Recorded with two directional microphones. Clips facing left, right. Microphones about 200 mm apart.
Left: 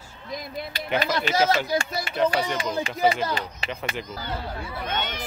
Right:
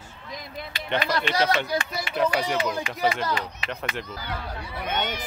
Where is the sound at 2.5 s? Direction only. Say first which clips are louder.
Right 1 dB; 25° left (ahead or behind).